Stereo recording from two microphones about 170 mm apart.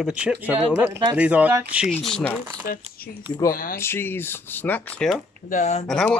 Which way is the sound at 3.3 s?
25° left (ahead or behind).